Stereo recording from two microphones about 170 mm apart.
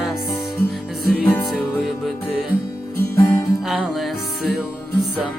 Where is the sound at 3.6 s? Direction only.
Centre (ahead or behind).